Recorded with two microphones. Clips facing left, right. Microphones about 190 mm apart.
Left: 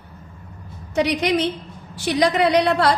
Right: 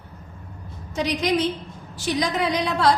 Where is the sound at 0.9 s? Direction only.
65° left (ahead or behind).